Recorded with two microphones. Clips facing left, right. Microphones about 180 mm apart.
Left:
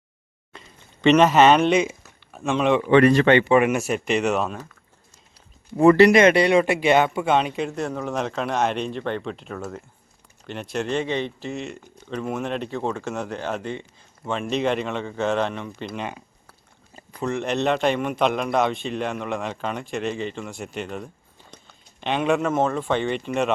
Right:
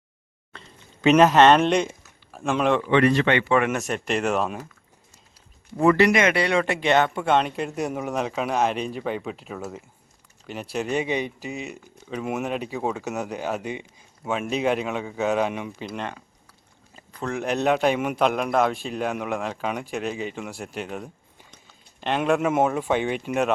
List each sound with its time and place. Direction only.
1.0 s speech: centre (ahead or behind)
2.9 s speech: 45° left (ahead or behind)
3.4 s a man's voice: 15° left (ahead or behind); by 4.6 s 5° right (ahead or behind)
5.7 s speech: 30° left (ahead or behind)
6.4 s speech: 15° left (ahead or behind)
7.8 s a man's voice: 10° right (ahead or behind)
15.9 s a man's voice: centre (ahead or behind)
17.2 s a man's voice: centre (ahead or behind)